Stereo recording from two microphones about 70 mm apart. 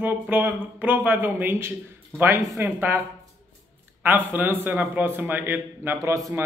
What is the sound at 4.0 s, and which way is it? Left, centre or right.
Speech, right.